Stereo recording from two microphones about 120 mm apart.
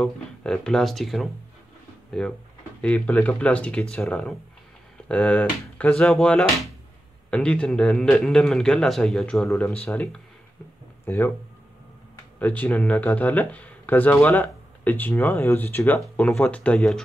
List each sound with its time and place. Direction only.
0.0 s speech: 5° left (ahead or behind)
12.4 s speech: 15° left (ahead or behind)